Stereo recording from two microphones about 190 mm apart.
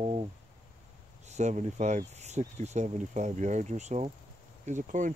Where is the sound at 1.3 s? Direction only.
35° right (ahead or behind).